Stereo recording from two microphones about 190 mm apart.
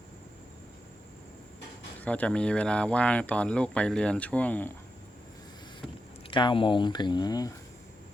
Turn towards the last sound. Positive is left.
turn(degrees=20)  # may be behind; listen again after turning